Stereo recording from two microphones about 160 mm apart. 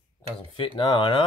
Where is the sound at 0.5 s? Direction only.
30° left (ahead or behind).